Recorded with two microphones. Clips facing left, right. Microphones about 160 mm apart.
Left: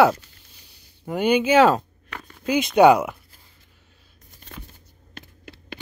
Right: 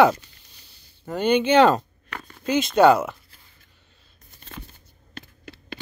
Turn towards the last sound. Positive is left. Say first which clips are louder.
# right 1 dB
turn(degrees=15)  # may be behind; listen again after turning